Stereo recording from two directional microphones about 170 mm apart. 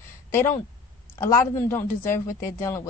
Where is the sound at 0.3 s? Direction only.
15° left (ahead or behind).